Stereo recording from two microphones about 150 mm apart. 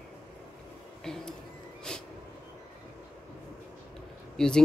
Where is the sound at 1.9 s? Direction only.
5° left (ahead or behind).